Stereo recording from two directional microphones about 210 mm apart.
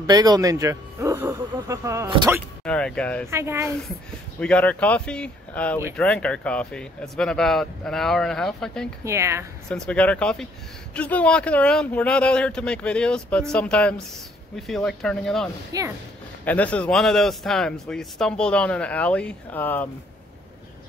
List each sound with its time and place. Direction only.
0.0 s speech: 20° right (ahead or behind)
2.6 s a man's voice: 5° left (ahead or behind)
3.3 s speech: 15° right (ahead or behind)
4.4 s a man's voice: 5° left (ahead or behind)
9.0 s speech: 15° right (ahead or behind)
9.7 s a man's voice: 5° left (ahead or behind)
15.7 s speech: 15° right (ahead or behind)
16.4 s a man's voice: 5° left (ahead or behind)